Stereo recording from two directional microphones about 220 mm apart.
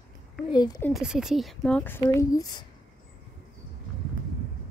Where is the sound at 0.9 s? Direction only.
Centre (ahead or behind); by 2.6 s 15° left (ahead or behind).